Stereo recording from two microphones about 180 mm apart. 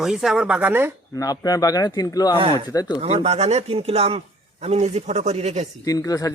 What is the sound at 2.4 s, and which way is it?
Speech, 30° right (ahead or behind).